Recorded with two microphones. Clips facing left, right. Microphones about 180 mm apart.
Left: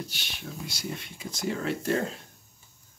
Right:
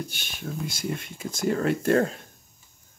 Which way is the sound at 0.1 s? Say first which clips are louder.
Right 5 dB; 50° right (ahead or behind).